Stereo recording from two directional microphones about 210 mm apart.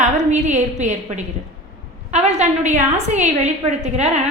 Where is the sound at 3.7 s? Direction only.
30° right (ahead or behind).